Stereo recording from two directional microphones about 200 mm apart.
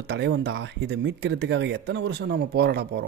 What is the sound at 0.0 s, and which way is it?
Speech, 55° right (ahead or behind).